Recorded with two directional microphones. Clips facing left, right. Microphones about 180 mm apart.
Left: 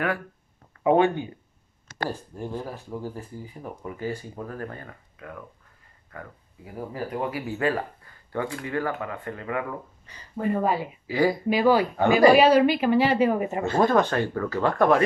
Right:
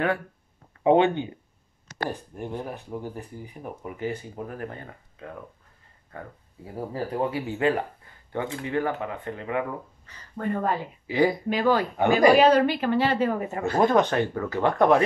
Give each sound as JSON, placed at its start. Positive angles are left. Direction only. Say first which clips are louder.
{"t": 0.8, "sound": "speech", "louder": "right 1 dB", "side_deg": -25}
{"t": 10.0, "sound": "speech", "louder": "left 3 dB", "side_deg": 10}
{"t": 11.1, "sound": "speech", "louder": "even", "side_deg": -20}
{"t": 11.4, "sound": "a woman's voice", "louder": "left 3 dB", "side_deg": 10}
{"t": 13.7, "sound": "speech", "louder": "right 1 dB", "side_deg": -20}